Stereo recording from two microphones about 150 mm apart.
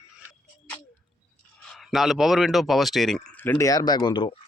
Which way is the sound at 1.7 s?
Centre (ahead or behind).